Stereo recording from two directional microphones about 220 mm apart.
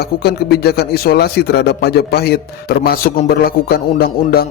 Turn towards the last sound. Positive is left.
turn(degrees=45)  # may be behind; listen again after turning